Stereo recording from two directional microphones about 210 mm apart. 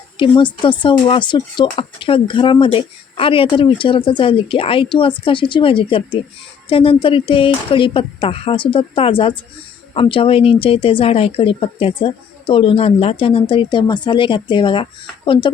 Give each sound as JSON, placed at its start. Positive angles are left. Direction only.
{"t": 0.2, "sound": "speech", "side_deg": 25}